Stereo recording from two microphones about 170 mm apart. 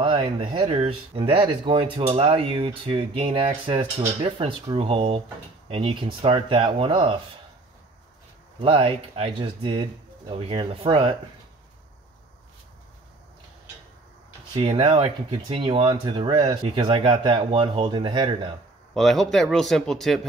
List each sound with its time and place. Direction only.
0.0 s a sound: 35° right (ahead or behind)
0.6 s speech: 35° right (ahead or behind)
8.5 s speech: 30° right (ahead or behind)
14.5 s speech: 35° right (ahead or behind)
18.9 s speech: centre (ahead or behind)